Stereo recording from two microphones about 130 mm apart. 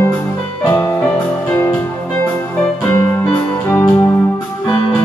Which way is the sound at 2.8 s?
10° left (ahead or behind).